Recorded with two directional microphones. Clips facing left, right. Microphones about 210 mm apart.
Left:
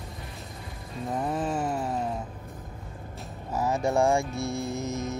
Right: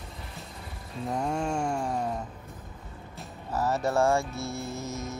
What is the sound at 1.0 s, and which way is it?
Music, centre (ahead or behind).